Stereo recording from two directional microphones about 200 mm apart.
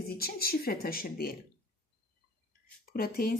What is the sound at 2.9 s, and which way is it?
Speech, 45° left (ahead or behind).